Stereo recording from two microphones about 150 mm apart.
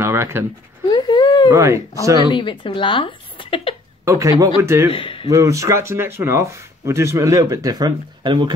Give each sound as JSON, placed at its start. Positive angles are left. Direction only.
{"t": 0.0, "sound": "a sound", "side_deg": -15}
{"t": 0.8, "sound": "a sound", "side_deg": 30}
{"t": 1.5, "sound": "speech", "side_deg": -20}
{"t": 2.3, "sound": "a woman's voice", "side_deg": 35}
{"t": 4.0, "sound": "a man's voice", "side_deg": -20}
{"t": 4.9, "sound": "speech", "side_deg": 35}
{"t": 5.3, "sound": "speech", "side_deg": -20}